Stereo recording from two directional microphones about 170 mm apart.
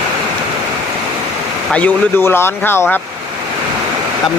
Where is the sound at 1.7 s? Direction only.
10° left (ahead or behind).